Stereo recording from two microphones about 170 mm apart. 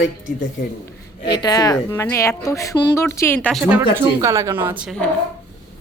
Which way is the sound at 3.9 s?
20° right (ahead or behind).